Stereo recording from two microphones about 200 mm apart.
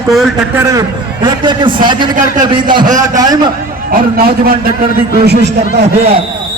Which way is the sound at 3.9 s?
45° right (ahead or behind).